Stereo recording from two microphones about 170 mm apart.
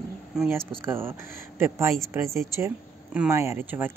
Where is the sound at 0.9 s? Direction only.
15° right (ahead or behind).